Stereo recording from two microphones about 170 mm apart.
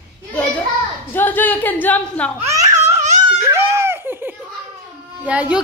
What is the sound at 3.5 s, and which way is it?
Laughter, 15° right (ahead or behind).